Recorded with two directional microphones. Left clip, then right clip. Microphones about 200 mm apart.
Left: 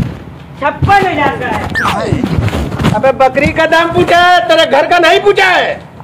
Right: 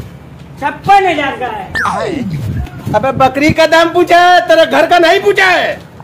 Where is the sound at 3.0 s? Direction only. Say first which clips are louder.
Left 2 dB; 50° right (ahead or behind).